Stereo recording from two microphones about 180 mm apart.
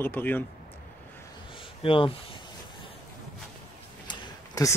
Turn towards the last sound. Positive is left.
turn(degrees=20)  # may be behind; listen again after turning